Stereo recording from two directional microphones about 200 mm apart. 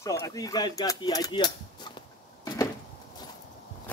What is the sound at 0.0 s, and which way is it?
Speech, 15° left (ahead or behind).